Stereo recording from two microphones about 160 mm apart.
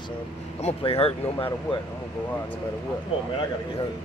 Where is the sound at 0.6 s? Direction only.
40° left (ahead or behind).